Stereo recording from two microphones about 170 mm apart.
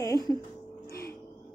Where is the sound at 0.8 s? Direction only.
65° left (ahead or behind).